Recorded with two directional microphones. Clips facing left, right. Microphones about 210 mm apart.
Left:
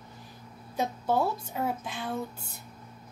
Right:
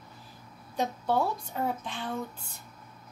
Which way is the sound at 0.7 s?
10° left (ahead or behind).